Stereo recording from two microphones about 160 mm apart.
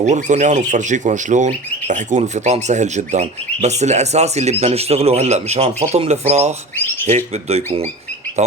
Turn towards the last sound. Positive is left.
turn(degrees=-40)  # may be behind; listen again after turning